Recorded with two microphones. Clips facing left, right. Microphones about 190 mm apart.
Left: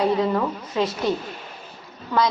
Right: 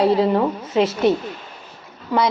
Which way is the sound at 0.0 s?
30° right (ahead or behind).